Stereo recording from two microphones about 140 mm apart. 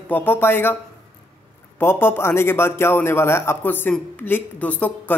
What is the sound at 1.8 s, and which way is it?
Speech, 15° left (ahead or behind).